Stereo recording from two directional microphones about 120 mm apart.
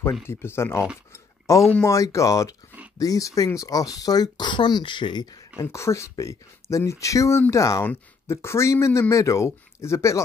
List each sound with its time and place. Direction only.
0.3 s speech: 20° left (ahead or behind)
1.1 s a sound: 25° left (ahead or behind)
1.9 s speech: 25° left (ahead or behind)
5.6 s speech: 25° left (ahead or behind)